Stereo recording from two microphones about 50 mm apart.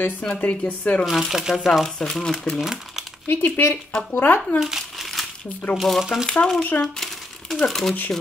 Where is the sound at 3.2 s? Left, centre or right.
Left.